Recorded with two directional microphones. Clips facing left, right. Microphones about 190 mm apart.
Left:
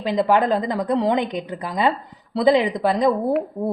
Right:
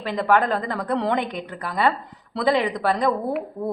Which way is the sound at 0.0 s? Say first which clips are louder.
Left 2 dB; 15° left (ahead or behind).